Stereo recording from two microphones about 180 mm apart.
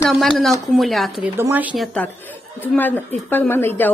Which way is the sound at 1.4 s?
10° right (ahead or behind).